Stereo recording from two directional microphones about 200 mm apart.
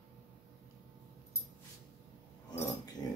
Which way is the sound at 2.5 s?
20° left (ahead or behind).